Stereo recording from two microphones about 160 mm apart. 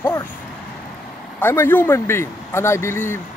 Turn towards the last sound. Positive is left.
turn(degrees=15)  # may be behind; listen again after turning